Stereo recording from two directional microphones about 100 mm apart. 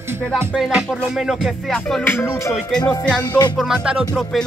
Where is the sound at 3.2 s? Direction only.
45° left (ahead or behind).